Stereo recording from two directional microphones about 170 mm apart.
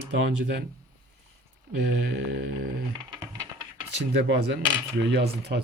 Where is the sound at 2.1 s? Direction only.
90° right.